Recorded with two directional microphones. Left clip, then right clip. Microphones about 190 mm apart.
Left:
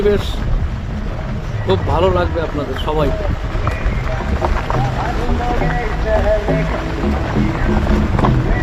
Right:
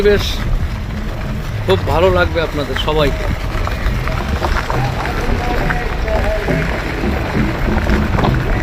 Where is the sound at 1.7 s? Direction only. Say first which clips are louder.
Right 2 dB; 10° right (ahead or behind).